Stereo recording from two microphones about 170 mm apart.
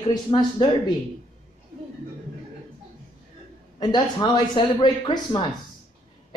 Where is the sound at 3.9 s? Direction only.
25° left (ahead or behind).